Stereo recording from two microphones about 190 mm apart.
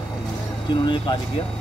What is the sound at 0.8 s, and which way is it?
Speech, 25° left (ahead or behind).